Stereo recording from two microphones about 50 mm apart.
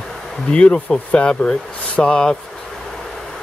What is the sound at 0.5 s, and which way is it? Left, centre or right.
Speech, centre.